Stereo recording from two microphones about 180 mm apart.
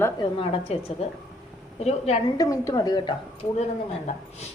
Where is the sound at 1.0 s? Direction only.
35° left (ahead or behind).